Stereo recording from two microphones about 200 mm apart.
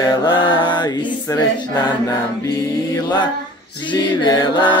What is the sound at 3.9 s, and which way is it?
Mantra, 25° left (ahead or behind).